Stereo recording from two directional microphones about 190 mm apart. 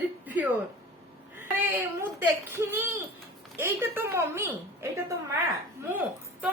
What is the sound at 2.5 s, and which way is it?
A woman's voice, 10° right (ahead or behind).